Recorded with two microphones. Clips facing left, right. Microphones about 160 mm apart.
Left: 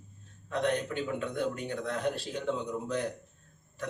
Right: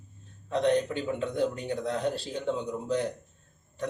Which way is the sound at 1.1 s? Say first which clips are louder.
Right 5 dB; 35° right (ahead or behind).